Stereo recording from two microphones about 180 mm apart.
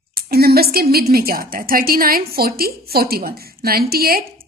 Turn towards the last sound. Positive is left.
turn(degrees=-55)  # may be behind; listen again after turning